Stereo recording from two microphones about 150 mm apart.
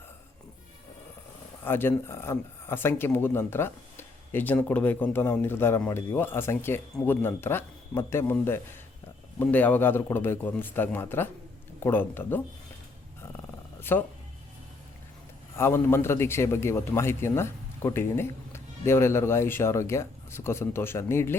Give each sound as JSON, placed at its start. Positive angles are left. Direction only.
{"t": 1.6, "sound": "a man's voice", "side_deg": 15}
{"t": 13.9, "sound": "a man's voice", "side_deg": 15}
{"t": 15.5, "sound": "a man's voice", "side_deg": 15}